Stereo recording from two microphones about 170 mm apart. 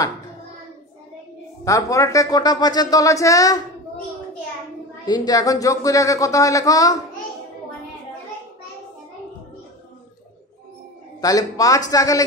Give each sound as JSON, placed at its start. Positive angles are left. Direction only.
{"t": 1.6, "sound": "speech", "side_deg": 20}
{"t": 5.0, "sound": "speech", "side_deg": 25}
{"t": 11.1, "sound": "speech", "side_deg": 20}